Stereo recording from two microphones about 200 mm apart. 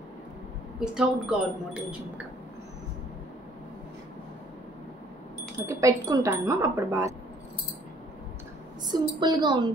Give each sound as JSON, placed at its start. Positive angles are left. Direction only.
{"t": 0.7, "sound": "a woman's voice", "side_deg": -5}
{"t": 5.6, "sound": "speech", "side_deg": -15}
{"t": 8.8, "sound": "a woman's voice", "side_deg": -20}